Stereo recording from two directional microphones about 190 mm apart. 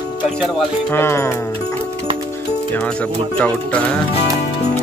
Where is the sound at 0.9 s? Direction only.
15° left (ahead or behind).